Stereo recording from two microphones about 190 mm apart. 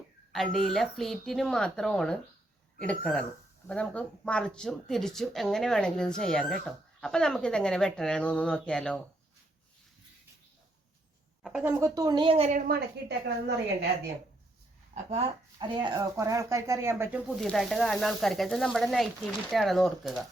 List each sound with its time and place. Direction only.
0.3 s speech: centre (ahead or behind)
11.4 s a woman's voice: centre (ahead or behind)
11.8 s a woman's voice: 20° right (ahead or behind)
12.5 s a woman's voice: 60° right (ahead or behind)
15.5 s speech: 25° right (ahead or behind); by 20.2 s centre (ahead or behind)